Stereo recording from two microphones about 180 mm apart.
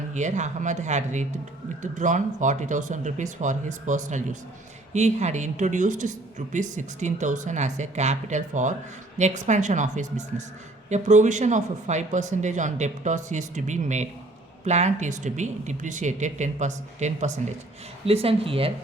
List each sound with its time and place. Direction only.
0.1 s speech: 40° right (ahead or behind)